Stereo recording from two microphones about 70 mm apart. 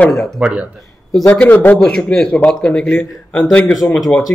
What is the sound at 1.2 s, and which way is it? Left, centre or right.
Speech, left.